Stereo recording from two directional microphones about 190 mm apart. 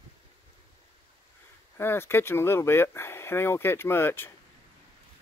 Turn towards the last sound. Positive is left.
turn(degrees=10)  # may be behind; listen again after turning